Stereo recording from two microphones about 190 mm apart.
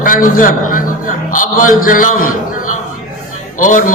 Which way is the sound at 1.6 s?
45° left (ahead or behind).